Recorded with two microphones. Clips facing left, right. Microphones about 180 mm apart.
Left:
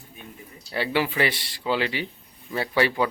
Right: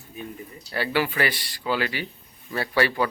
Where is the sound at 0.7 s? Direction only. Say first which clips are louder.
Even; 25° left (ahead or behind).